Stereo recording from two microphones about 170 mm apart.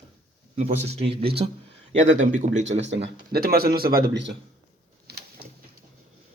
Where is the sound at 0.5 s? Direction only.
40° right (ahead or behind).